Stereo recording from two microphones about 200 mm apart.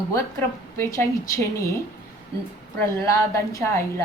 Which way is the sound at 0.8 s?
15° left (ahead or behind).